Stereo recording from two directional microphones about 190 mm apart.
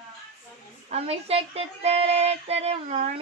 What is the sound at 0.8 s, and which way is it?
Female singing, 35° right (ahead or behind).